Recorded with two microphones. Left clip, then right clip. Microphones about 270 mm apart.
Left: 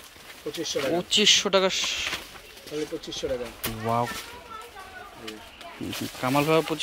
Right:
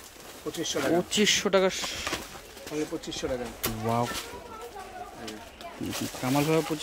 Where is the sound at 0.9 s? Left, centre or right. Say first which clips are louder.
Left 6 dB; centre.